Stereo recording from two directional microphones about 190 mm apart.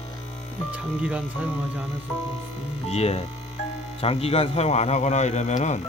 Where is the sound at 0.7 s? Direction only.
10° right (ahead or behind).